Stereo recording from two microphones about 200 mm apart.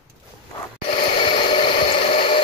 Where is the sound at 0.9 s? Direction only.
30° left (ahead or behind).